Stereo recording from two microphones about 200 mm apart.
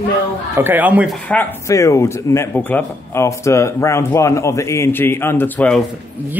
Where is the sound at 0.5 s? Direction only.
10° right (ahead or behind).